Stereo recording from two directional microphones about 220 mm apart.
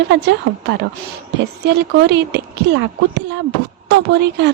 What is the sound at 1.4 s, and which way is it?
A woman's voice, 50° right (ahead or behind).